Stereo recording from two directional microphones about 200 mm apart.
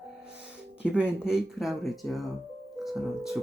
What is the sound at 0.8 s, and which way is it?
Speech, 5° right (ahead or behind).